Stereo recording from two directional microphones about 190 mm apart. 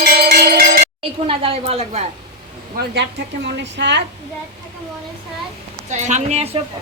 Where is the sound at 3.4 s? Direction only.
65° right (ahead or behind).